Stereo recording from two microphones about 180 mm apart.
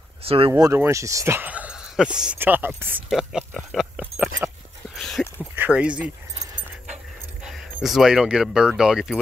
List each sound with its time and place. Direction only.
0.2 s speech: 30° right (ahead or behind)
0.5 s speech: 15° right (ahead or behind)
4.9 s a sound: centre (ahead or behind)
5.6 s speech: 5° right (ahead or behind)
7.4 s speech: centre (ahead or behind)